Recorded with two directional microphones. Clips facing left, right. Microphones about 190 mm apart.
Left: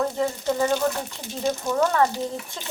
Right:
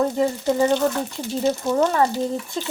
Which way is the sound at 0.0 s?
15° right (ahead or behind).